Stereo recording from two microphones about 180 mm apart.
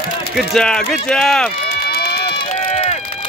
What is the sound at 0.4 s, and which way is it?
Speech, 5° left (ahead or behind).